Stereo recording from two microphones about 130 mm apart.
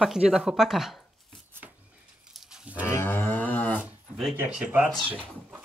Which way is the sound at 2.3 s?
5° right (ahead or behind).